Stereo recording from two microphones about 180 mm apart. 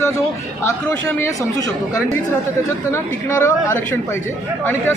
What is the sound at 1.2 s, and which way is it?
Speech, 15° left (ahead or behind).